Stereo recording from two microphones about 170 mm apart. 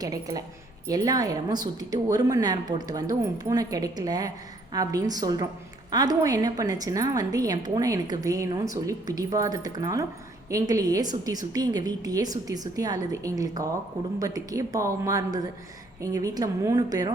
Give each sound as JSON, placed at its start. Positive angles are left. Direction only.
{"t": 0.0, "sound": "a woman's voice", "side_deg": -20}